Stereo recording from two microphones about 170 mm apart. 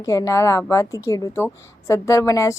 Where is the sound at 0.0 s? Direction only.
20° left (ahead or behind).